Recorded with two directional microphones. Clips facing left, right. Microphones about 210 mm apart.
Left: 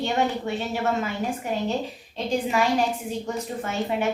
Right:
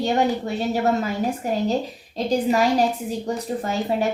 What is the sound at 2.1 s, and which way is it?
A woman's voice, 40° right (ahead or behind).